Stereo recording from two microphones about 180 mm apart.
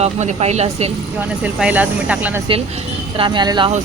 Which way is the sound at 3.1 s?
25° right (ahead or behind).